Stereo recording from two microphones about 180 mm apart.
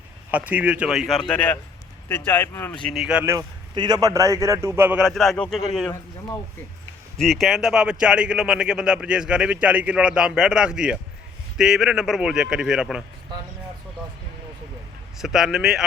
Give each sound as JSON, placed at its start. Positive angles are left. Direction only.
{"t": 0.3, "sound": "a man's voice", "side_deg": -10}
{"t": 2.8, "sound": "speech", "side_deg": 0}
{"t": 3.3, "sound": "a man's voice", "side_deg": -20}
{"t": 5.0, "sound": "speech", "side_deg": 0}
{"t": 7.2, "sound": "speech", "side_deg": 0}
{"t": 15.2, "sound": "speech", "side_deg": 0}